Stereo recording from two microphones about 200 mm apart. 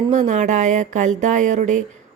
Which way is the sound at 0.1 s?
35° right (ahead or behind).